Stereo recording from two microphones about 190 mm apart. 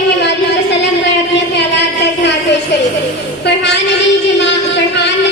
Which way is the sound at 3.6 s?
65° left (ahead or behind).